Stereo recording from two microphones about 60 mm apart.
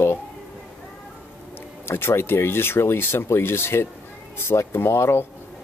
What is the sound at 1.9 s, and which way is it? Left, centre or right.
Speech, left.